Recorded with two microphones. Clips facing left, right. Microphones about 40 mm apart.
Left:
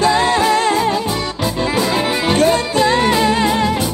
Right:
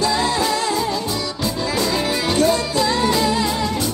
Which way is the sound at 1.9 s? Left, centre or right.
Left.